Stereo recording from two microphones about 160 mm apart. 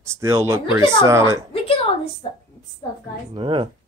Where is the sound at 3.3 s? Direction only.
30° right (ahead or behind).